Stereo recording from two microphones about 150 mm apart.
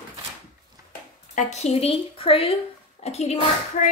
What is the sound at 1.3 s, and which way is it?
Speech, 50° left (ahead or behind).